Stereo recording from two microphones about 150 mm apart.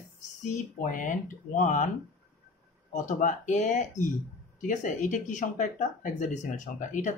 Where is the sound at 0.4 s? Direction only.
60° left (ahead or behind).